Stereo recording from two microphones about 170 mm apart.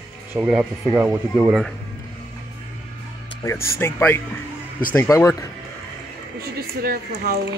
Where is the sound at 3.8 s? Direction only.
10° left (ahead or behind).